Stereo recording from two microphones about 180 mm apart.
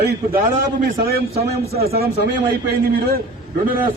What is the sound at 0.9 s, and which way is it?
Speech, 55° right (ahead or behind).